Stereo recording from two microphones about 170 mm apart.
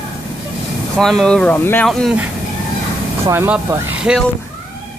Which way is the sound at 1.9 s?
Centre (ahead or behind).